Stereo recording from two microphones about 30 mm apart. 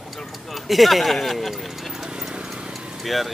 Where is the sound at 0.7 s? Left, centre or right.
Centre.